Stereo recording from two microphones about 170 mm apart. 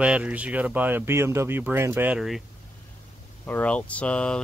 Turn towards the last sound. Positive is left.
turn(degrees=5)  # may be behind; listen again after turning